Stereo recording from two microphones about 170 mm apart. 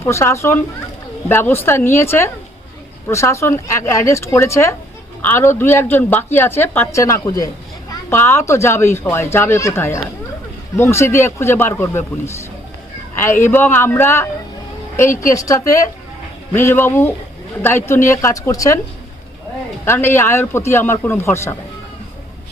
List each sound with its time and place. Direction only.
0.0 s a woman's voice: 15° left (ahead or behind)
19.8 s a woman's voice: 15° left (ahead or behind)